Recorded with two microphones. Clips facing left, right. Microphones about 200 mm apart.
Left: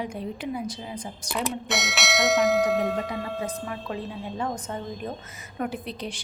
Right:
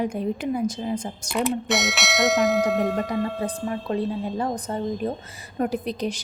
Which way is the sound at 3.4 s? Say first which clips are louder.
Right 5 dB; 35° right (ahead or behind).